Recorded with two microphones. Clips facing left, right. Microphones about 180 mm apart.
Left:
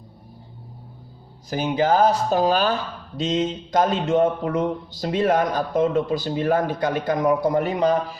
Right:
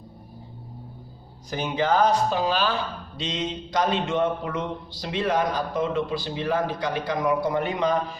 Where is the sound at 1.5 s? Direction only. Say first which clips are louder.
Left 4 dB; 35° left (ahead or behind).